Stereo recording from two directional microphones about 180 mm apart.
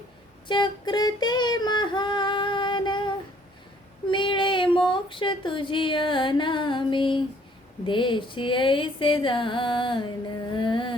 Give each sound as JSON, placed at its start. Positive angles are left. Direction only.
{"t": 0.4, "sound": "female singing", "side_deg": 25}
{"t": 4.1, "sound": "child singing", "side_deg": 25}
{"t": 4.9, "sound": "a sound", "side_deg": 30}